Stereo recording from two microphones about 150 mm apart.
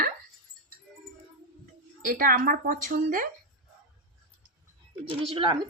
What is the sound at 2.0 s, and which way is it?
A woman's voice, 70° right (ahead or behind).